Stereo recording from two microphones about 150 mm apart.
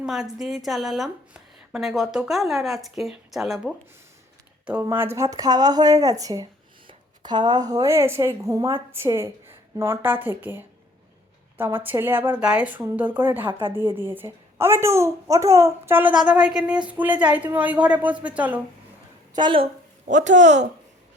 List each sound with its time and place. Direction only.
0.0 s a woman's voice: centre (ahead or behind)
11.6 s a woman's voice: 15° right (ahead or behind)
13.5 s a woman's voice: 30° right (ahead or behind)
13.9 s a woman's voice: 15° right (ahead or behind)
19.4 s a woman's voice: 30° right (ahead or behind)
20.1 s speech: 55° right (ahead or behind)